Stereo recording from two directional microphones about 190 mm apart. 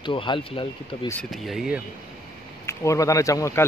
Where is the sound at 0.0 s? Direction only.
25° left (ahead or behind).